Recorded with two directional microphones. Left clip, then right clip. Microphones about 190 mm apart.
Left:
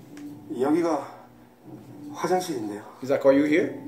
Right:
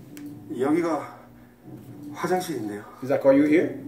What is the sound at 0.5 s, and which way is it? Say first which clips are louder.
Speech: even; 15° right (ahead or behind).